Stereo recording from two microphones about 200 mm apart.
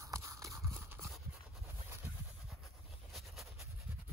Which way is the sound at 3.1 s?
Centre (ahead or behind).